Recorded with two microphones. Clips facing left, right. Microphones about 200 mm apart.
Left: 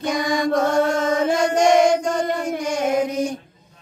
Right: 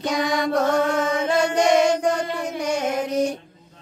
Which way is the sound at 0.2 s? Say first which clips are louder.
Even; 65° right (ahead or behind).